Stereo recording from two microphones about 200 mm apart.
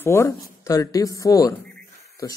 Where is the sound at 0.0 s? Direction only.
15° left (ahead or behind).